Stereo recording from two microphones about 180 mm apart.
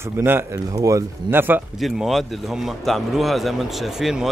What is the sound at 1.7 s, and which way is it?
A man's voice, centre (ahead or behind).